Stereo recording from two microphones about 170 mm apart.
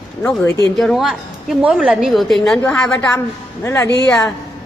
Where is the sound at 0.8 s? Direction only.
Centre (ahead or behind).